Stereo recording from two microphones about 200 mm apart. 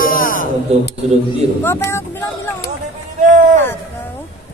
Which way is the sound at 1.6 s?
10° left (ahead or behind).